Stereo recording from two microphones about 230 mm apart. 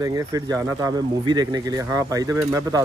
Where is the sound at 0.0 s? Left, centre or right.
Centre.